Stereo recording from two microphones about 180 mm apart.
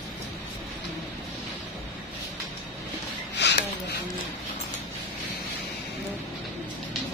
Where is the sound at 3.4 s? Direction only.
70° left (ahead or behind).